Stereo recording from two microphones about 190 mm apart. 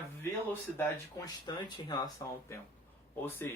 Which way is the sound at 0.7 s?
15° left (ahead or behind).